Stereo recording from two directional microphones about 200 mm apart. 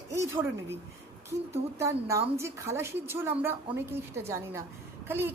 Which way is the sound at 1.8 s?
15° right (ahead or behind).